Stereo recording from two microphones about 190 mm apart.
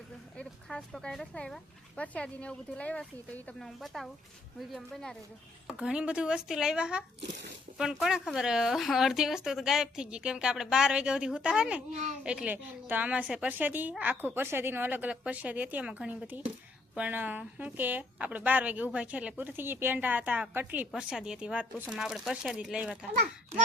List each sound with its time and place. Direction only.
0.3 s speech: 5° left (ahead or behind)
7.2 s speech: 65° right (ahead or behind)
7.8 s a woman's voice: centre (ahead or behind)